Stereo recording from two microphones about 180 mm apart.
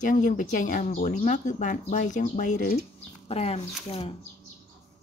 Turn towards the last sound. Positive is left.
turn(degrees=35)  # may be behind; listen again after turning